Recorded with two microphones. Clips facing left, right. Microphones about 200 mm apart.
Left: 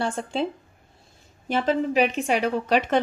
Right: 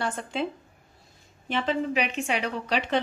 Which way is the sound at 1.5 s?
40° left (ahead or behind).